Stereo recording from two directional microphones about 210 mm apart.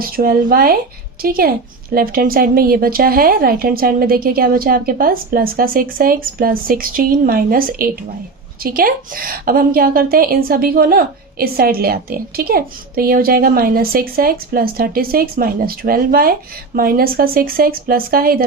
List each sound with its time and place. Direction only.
0.0 s a woman's voice: 45° right (ahead or behind)